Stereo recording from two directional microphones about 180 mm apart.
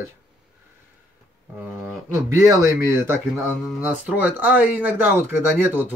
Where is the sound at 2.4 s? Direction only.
15° right (ahead or behind).